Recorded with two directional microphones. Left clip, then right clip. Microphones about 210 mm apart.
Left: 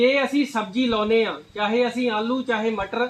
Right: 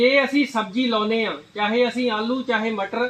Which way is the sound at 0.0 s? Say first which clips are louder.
Right 2 dB; 15° right (ahead or behind).